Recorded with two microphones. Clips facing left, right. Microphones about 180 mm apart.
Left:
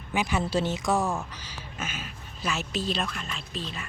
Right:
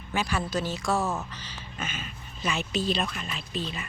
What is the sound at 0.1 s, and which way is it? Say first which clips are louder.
A woman's voice: left 2 dB; 20° left (ahead or behind).